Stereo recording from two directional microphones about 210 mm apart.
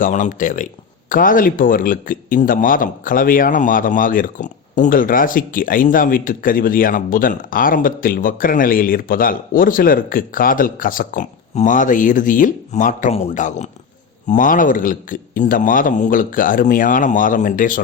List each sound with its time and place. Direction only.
0.0 s speech: 35° left (ahead or behind)